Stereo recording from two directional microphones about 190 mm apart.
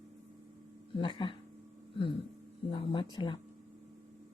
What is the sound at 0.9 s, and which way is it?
Speech, 25° left (ahead or behind).